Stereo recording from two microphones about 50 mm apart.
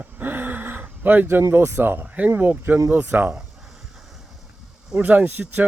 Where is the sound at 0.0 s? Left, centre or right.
Right.